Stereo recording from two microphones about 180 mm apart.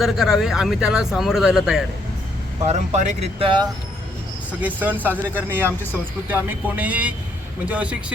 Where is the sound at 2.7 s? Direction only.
40° right (ahead or behind).